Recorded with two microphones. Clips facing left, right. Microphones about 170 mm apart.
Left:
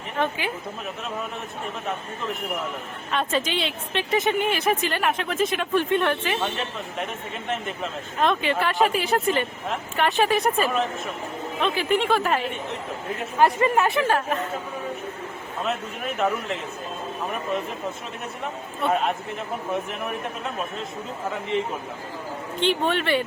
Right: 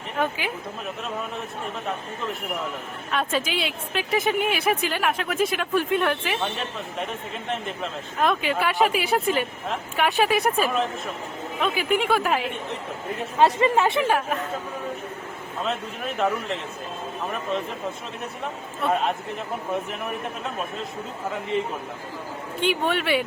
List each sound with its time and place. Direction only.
0.2 s a man's voice: centre (ahead or behind)
3.1 s a man's voice: 5° right (ahead or behind)
13.4 s speech: 25° right (ahead or behind)
14.1 s a man's voice: 5° right (ahead or behind)
15.6 s a man's voice: 5° left (ahead or behind)
18.8 s a man's voice: centre (ahead or behind)
22.6 s speech: 10° right (ahead or behind)